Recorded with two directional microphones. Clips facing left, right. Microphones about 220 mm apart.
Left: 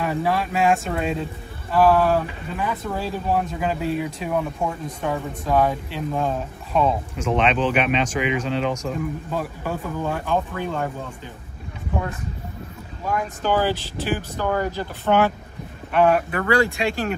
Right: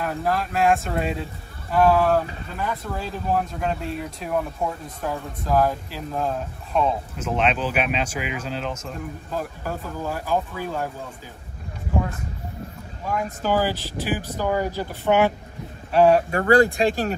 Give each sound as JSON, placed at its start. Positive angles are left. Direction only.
{"t": 0.0, "sound": "speech", "side_deg": 0}
{"t": 13.1, "sound": "speech", "side_deg": -5}
{"t": 15.9, "sound": "speech", "side_deg": -30}